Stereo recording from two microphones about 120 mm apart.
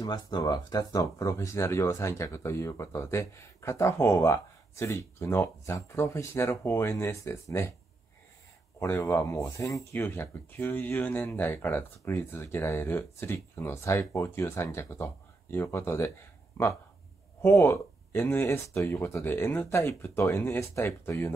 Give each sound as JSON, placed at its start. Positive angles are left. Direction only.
{"t": 0.0, "sound": "speech", "side_deg": 35}
{"t": 8.7, "sound": "speech", "side_deg": 20}
{"t": 17.4, "sound": "speech", "side_deg": 20}